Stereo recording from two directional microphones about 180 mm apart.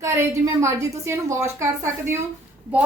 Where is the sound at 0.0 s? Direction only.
15° right (ahead or behind).